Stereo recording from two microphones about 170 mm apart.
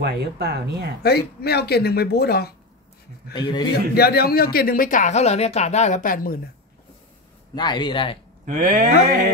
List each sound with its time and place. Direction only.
0.0 s speech: 70° right (ahead or behind)
1.0 s speech: 70° left (ahead or behind)
3.3 s speech: 25° left (ahead or behind)
3.9 s speech: 65° left (ahead or behind)
7.5 s speech: 25° left (ahead or behind)
8.5 s speech: 50° right (ahead or behind)